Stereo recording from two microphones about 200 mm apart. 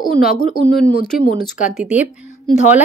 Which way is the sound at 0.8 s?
Centre (ahead or behind).